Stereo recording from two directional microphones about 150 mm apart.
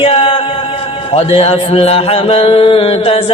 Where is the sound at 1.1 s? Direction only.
40° left (ahead or behind).